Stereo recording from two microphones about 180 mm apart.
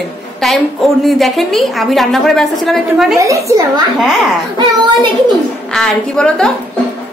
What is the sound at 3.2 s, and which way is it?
Speech, 15° right (ahead or behind).